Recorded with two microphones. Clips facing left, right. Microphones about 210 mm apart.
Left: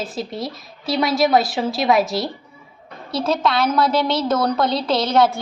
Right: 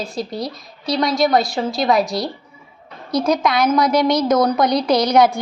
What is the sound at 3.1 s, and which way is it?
A woman's voice, 15° right (ahead or behind).